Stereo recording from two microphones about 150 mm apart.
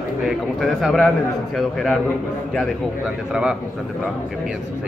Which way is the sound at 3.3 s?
5° right (ahead or behind).